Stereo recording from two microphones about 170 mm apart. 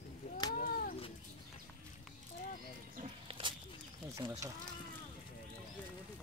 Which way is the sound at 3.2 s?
30° right (ahead or behind).